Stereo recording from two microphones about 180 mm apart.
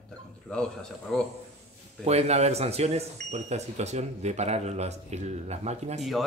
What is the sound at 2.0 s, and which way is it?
Speech, 35° right (ahead or behind).